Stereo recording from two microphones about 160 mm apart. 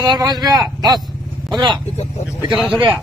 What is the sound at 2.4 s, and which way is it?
Speech, 5° right (ahead or behind).